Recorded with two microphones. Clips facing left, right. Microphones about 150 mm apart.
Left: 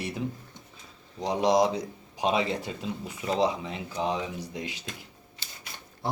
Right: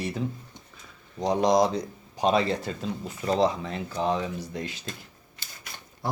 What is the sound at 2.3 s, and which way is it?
Speech, 10° left (ahead or behind).